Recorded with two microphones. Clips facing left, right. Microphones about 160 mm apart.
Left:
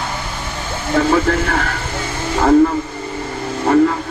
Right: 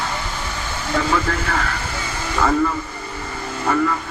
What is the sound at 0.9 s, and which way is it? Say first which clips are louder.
Speech: left 6 dB; 40° left (ahead or behind).